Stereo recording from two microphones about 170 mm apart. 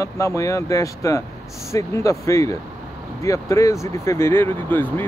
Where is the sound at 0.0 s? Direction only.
15° left (ahead or behind).